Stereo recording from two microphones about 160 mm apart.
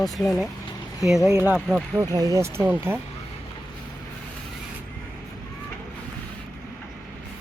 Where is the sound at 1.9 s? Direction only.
20° right (ahead or behind).